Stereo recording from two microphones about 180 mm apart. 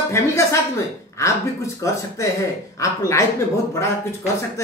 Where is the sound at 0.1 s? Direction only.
15° left (ahead or behind).